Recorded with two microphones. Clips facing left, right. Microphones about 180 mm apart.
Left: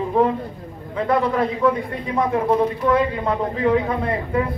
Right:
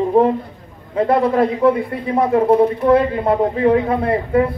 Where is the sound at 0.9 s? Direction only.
30° right (ahead or behind).